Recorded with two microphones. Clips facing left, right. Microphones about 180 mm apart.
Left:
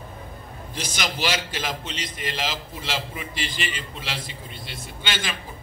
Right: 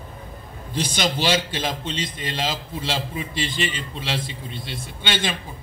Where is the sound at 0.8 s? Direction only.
25° right (ahead or behind).